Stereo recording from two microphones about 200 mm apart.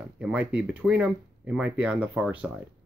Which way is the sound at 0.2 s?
5° right (ahead or behind).